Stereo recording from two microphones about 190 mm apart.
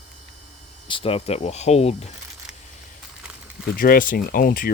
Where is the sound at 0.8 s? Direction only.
30° left (ahead or behind).